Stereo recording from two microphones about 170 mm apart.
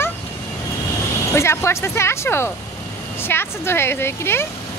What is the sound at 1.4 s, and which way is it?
Speech, 15° left (ahead or behind).